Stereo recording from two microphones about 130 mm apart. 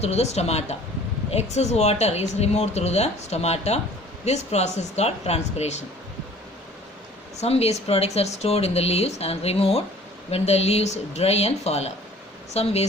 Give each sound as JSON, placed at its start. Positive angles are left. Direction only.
{"t": 0.0, "sound": "speech", "side_deg": 55}
{"t": 7.3, "sound": "speech", "side_deg": 55}